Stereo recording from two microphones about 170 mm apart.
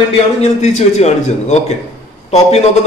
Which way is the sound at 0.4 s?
40° left (ahead or behind).